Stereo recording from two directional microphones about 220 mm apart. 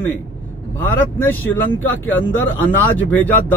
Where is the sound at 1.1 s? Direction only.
10° left (ahead or behind).